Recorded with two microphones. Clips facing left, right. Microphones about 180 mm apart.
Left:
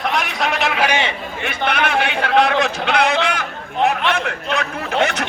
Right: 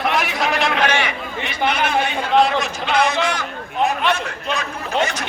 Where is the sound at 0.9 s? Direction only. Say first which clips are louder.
Left 1 dB; 20° left (ahead or behind).